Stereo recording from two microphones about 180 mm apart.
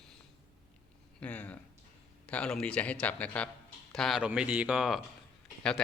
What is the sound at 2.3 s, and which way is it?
A man's voice, 5° left (ahead or behind).